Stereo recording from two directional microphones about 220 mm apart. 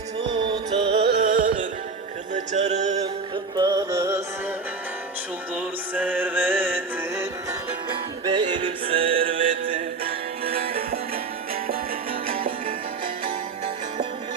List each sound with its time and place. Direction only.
0.3 s music: 20° right (ahead or behind)
1.2 s music: 35° right (ahead or behind)
3.5 s music: 15° right (ahead or behind)
5.5 s music: 5° right (ahead or behind)
8.2 s music: 20° right (ahead or behind)
10.5 s music: 45° right (ahead or behind)